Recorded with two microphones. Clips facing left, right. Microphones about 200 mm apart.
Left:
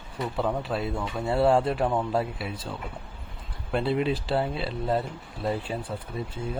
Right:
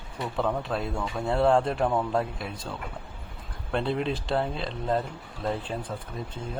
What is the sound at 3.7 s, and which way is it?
Speech, 5° left (ahead or behind).